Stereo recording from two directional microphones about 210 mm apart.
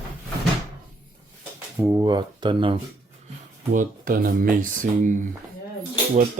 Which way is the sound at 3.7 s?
40° right (ahead or behind).